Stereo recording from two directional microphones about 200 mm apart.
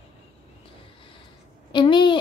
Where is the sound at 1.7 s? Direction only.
25° left (ahead or behind).